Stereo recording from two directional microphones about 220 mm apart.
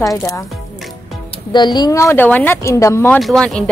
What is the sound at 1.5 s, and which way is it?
Speech, 20° left (ahead or behind).